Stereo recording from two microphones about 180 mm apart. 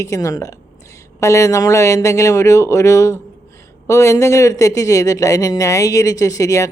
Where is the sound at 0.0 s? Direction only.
15° left (ahead or behind).